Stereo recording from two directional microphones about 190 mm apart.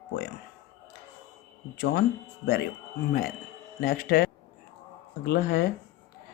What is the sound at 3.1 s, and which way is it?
Speech, 50° left (ahead or behind).